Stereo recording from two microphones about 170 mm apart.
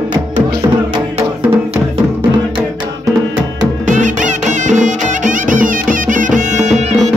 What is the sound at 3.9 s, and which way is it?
Music, 50° right (ahead or behind).